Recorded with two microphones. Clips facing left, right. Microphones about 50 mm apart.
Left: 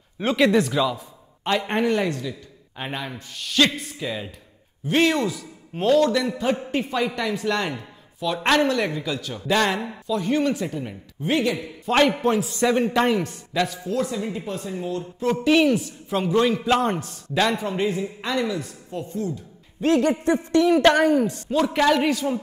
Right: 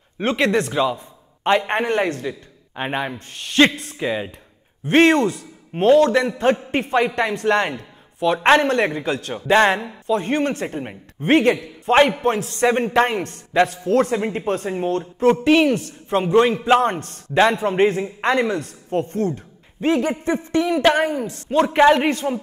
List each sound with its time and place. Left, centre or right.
0.2 s speech: centre
0.9 s a man's voice: right
4.8 s speech: right
13.2 s a man's voice: right
15.4 s a man's voice: right
17.0 s a man's voice: right
19.8 s a man's voice: right